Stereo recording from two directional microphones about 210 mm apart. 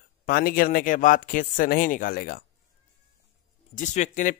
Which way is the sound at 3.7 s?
35° left (ahead or behind).